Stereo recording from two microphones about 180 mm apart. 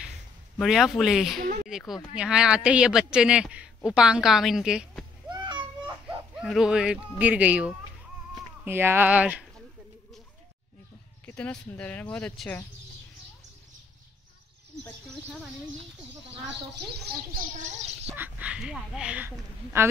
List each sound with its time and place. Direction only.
0.6 s speech: centre (ahead or behind)
5.3 s a sound: 25° right (ahead or behind)
6.0 s a woman's voice: centre (ahead or behind)
11.2 s speech: 10° left (ahead or behind)
17.0 s speech: 50° right (ahead or behind)
18.1 s a woman's voice: 10° right (ahead or behind)